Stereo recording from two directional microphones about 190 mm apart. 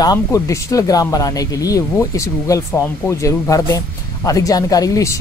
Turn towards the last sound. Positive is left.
turn(degrees=15)  # may be behind; listen again after turning